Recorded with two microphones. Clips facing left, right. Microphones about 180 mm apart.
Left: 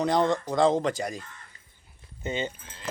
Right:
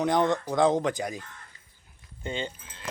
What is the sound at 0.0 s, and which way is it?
Speech, centre (ahead or behind).